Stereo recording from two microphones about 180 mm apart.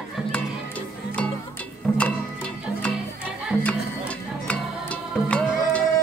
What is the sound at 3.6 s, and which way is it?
Music, 5° left (ahead or behind).